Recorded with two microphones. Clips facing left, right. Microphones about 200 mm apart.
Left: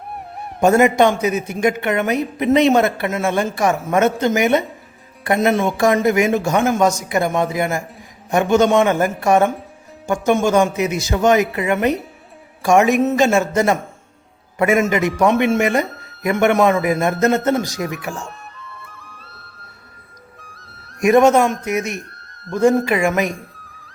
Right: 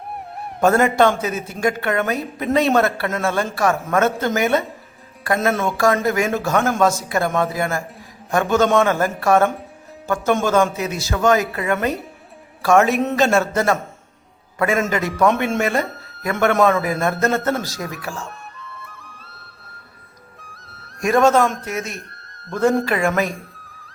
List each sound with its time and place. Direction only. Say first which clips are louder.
0.6 s speech: left 2 dB; 10° left (ahead or behind)
20.4 s music: even; centre (ahead or behind)
21.0 s speech: left 3 dB; 15° left (ahead or behind)